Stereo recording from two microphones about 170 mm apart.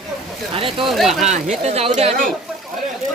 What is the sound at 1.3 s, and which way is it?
Speech, 40° right (ahead or behind).